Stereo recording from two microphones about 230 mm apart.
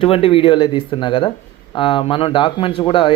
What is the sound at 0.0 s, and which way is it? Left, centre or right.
Speech, left.